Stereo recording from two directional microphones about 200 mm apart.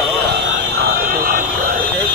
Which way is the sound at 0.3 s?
55° right (ahead or behind).